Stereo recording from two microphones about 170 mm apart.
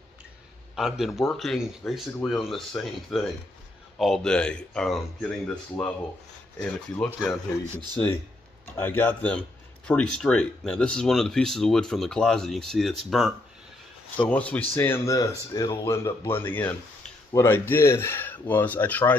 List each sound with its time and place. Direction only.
0.7 s speech: centre (ahead or behind)